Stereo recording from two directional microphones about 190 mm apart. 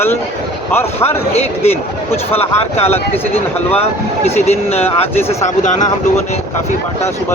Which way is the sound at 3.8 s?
35° left (ahead or behind).